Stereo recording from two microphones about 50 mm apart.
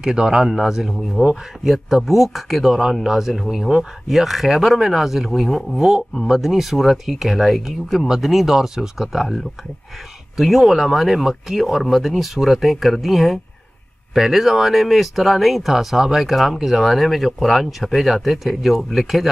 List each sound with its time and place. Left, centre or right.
0.0 s speech: centre
1.2 s speech: right
1.6 s speech: centre